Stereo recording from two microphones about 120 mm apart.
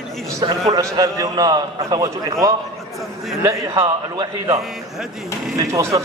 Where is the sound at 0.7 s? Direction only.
30° right (ahead or behind).